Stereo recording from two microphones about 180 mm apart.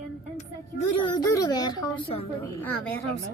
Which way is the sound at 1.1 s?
20° left (ahead or behind).